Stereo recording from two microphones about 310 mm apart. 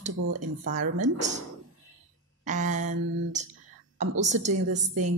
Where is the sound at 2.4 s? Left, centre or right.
Right.